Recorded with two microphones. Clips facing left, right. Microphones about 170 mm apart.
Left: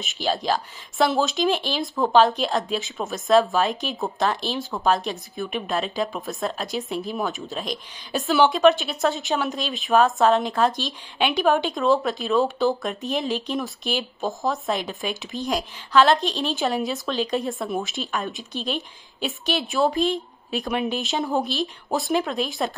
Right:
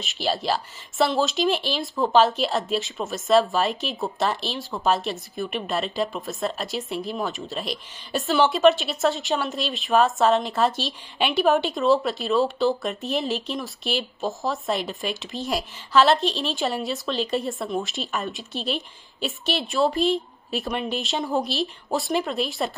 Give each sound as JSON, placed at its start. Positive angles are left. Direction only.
{"t": 0.0, "sound": "speech", "side_deg": 0}